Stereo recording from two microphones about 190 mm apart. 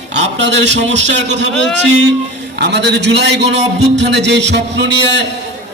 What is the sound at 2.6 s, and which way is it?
A man's voice, 65° right (ahead or behind).